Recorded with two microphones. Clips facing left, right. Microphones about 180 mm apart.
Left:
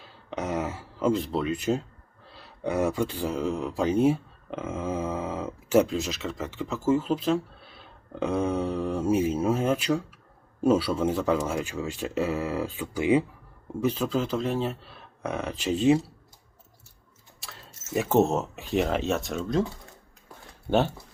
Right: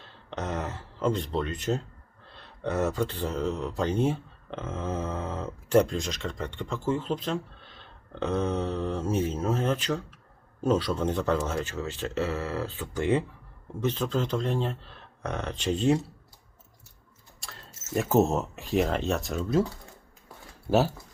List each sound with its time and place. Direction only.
0.0 s a sound: 10° left (ahead or behind)
2.3 s speech: 10° left (ahead or behind)
17.4 s speech: centre (ahead or behind)